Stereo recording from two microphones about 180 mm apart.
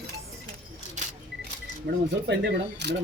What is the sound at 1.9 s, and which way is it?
Speech, 70° right (ahead or behind).